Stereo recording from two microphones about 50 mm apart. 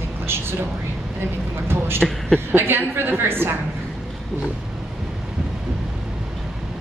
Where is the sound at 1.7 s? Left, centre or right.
Right.